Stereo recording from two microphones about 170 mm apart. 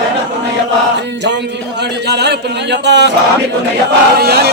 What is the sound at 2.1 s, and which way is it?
Speech, 80° right.